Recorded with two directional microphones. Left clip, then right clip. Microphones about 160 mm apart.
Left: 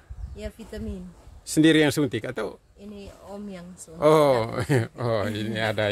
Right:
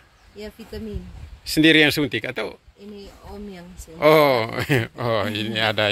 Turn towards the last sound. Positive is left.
turn(degrees=5)  # may be behind; listen again after turning